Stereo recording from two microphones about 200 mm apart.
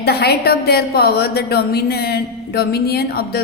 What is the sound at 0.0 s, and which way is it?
A woman's voice, 55° left (ahead or behind).